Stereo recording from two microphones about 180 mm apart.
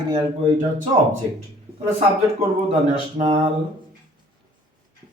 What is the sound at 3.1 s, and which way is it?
Speech, 30° right (ahead or behind).